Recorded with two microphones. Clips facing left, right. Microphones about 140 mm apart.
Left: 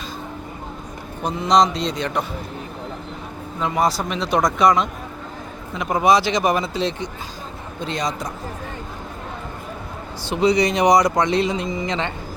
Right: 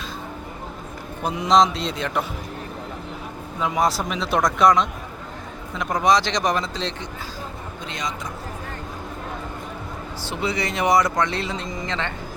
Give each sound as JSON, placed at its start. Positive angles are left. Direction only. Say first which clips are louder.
{"t": 1.2, "sound": "speech", "louder": "left 1 dB", "side_deg": -5}
{"t": 3.6, "sound": "speech", "louder": "left 1 dB", "side_deg": 0}
{"t": 7.9, "sound": "speech", "louder": "left 6 dB", "side_deg": 35}
{"t": 10.2, "sound": "speech", "louder": "left 9 dB", "side_deg": 15}